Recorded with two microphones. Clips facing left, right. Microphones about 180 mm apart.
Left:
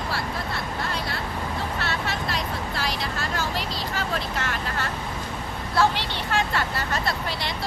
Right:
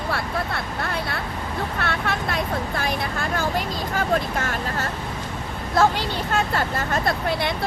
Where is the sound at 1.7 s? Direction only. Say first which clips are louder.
Right 3 dB; 55° right (ahead or behind).